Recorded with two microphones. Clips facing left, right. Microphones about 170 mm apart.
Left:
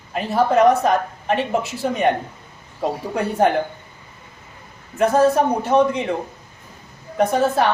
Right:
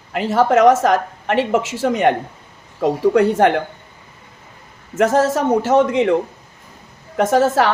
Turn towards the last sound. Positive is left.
turn(degrees=-90)